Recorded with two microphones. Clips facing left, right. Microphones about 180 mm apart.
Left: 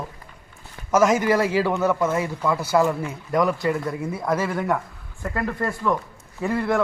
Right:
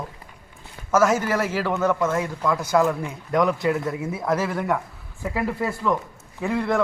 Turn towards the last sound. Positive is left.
turn(degrees=0)  # may be behind; listen again after turning